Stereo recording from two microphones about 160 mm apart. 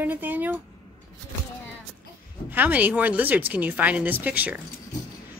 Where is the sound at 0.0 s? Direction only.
10° right (ahead or behind).